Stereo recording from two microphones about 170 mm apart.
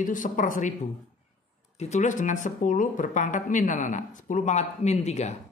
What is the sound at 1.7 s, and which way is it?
Speech, 45° left (ahead or behind).